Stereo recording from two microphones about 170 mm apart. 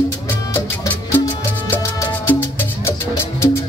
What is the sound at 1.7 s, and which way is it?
Music, 10° left (ahead or behind).